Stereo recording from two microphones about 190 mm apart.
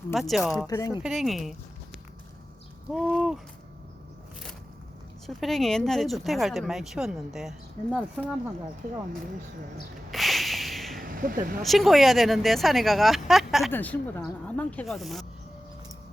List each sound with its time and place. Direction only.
0.1 s speech: centre (ahead or behind)
0.7 s speech: 20° left (ahead or behind)
1.0 s speech: centre (ahead or behind)
5.2 s speech: centre (ahead or behind)
10.1 s a sound: centre (ahead or behind)
10.9 s a sound: 45° right (ahead or behind)
11.6 s speech: centre (ahead or behind)
13.7 s speech: 10° left (ahead or behind)